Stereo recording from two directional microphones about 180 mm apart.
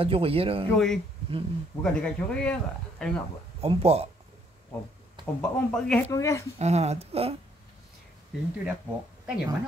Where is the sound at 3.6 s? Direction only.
35° right (ahead or behind).